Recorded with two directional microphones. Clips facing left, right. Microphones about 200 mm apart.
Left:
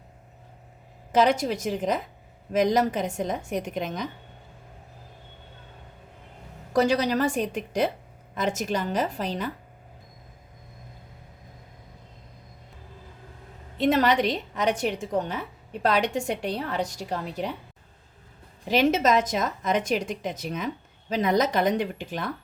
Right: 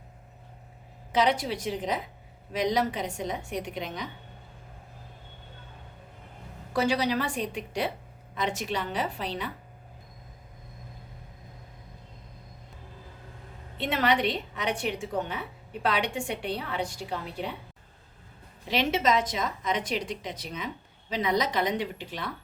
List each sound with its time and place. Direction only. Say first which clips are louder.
1.1 s a woman's voice: left 4 dB; 45° left (ahead or behind)
6.7 s a woman's voice: left 4 dB; 40° left (ahead or behind)
13.7 s a woman's voice: left 5 dB; 40° left (ahead or behind)
18.7 s a woman's voice: left 4 dB; 45° left (ahead or behind)